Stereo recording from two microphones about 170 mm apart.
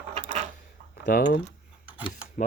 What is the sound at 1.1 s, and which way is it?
Speech, 55° left (ahead or behind).